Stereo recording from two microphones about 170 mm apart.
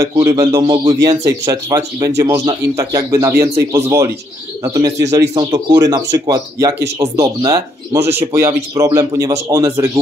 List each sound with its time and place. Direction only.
0.0 s a man's voice: 20° right (ahead or behind)